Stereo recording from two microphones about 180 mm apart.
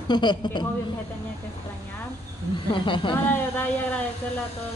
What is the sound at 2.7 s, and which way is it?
Speech, 25° left (ahead or behind).